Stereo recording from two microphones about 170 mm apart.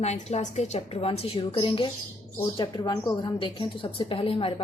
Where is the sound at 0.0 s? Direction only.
40° left (ahead or behind).